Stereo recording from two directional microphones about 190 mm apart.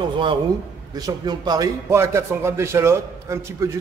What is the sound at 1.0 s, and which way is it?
A man's voice, 20° right (ahead or behind).